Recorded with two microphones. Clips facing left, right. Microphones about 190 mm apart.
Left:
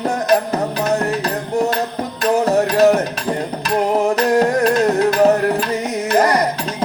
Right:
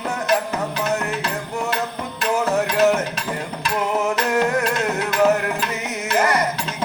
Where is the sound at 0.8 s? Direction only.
40° left (ahead or behind).